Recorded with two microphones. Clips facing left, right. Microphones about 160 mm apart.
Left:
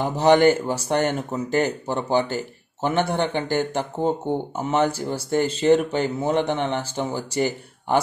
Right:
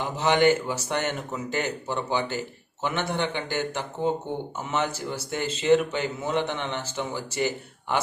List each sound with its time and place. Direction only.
0.0 s speech: 35° left (ahead or behind)